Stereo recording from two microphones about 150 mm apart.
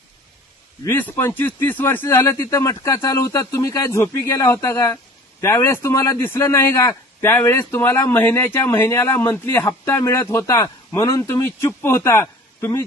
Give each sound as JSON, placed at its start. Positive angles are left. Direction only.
{"t": 0.9, "sound": "a man's voice", "side_deg": 15}